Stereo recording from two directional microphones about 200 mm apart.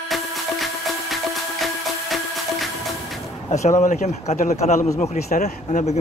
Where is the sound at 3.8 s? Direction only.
35° left (ahead or behind).